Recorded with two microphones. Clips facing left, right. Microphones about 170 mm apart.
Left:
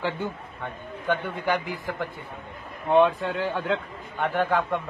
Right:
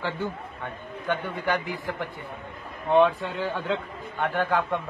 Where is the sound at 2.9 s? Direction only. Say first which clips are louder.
Left 1 dB; 15° left (ahead or behind).